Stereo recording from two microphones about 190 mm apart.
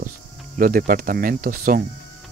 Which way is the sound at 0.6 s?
50° right (ahead or behind).